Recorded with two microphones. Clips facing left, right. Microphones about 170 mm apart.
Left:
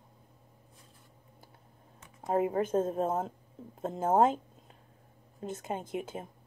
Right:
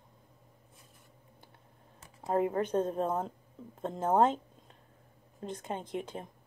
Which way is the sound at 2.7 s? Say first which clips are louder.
Left 1 dB; 30° left (ahead or behind).